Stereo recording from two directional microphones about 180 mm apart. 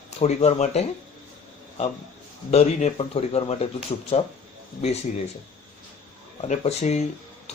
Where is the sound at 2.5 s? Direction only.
35° left (ahead or behind).